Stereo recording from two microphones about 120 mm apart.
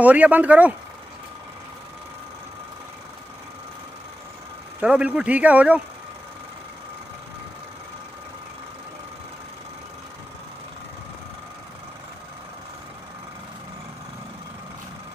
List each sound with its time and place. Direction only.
0.0 s speech: 15° right (ahead or behind)
4.7 s speech: 10° right (ahead or behind)